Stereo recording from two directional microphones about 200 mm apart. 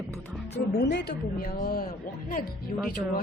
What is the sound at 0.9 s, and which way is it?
A woman's voice, 55° left (ahead or behind).